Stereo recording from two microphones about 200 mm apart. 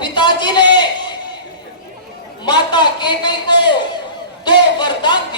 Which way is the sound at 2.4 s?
20° left (ahead or behind).